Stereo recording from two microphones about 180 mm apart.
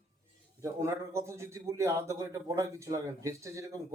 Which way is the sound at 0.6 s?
15° right (ahead or behind).